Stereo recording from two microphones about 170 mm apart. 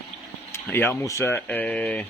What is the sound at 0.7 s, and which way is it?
Speech, 15° left (ahead or behind).